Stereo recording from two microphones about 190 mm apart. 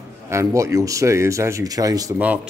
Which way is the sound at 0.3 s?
15° right (ahead or behind).